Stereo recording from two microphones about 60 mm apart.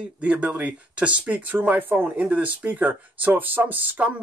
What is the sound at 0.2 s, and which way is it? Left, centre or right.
A woman's voice, right.